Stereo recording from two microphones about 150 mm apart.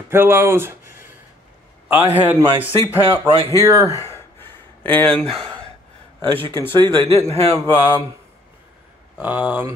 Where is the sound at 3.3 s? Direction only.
20° left (ahead or behind).